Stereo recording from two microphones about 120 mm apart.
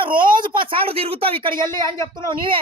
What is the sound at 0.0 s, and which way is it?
Speech, 45° right (ahead or behind).